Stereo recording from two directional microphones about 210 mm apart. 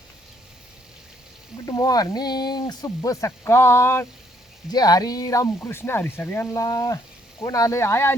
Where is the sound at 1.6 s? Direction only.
15° left (ahead or behind).